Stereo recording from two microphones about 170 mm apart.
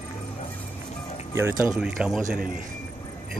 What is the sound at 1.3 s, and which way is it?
Speech, 15° right (ahead or behind).